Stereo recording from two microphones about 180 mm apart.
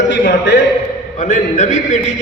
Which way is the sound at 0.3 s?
65° left (ahead or behind).